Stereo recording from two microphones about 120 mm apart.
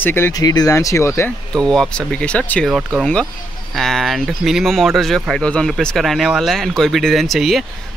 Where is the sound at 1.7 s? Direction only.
5° left (ahead or behind).